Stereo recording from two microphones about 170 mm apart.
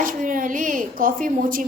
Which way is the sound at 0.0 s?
50° right (ahead or behind).